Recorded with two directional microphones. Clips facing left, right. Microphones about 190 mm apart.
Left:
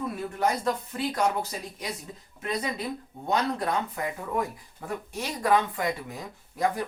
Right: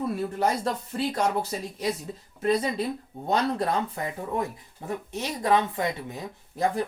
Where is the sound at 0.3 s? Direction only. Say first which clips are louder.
Left 2 dB; 30° right (ahead or behind).